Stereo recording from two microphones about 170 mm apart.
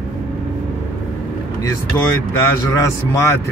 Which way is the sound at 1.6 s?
15° left (ahead or behind).